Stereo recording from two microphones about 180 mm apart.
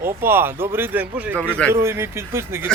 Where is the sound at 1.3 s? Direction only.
5° left (ahead or behind).